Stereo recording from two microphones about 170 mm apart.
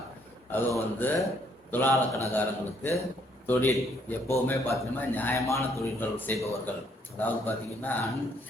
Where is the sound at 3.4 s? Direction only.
10° left (ahead or behind).